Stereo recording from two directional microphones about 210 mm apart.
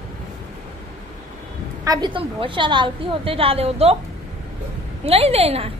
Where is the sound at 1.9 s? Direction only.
20° right (ahead or behind).